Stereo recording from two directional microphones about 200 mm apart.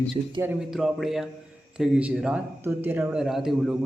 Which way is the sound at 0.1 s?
5° right (ahead or behind).